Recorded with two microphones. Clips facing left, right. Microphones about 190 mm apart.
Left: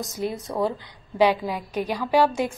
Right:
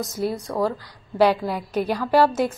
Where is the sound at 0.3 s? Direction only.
20° left (ahead or behind).